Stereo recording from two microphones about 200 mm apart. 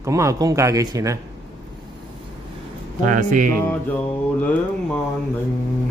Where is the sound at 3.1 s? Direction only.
40° right (ahead or behind).